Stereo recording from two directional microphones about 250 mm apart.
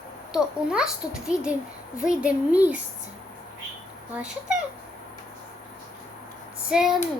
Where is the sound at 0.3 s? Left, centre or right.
Centre.